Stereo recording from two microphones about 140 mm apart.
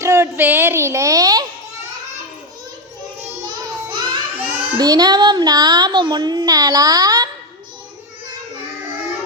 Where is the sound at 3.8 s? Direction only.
35° right (ahead or behind).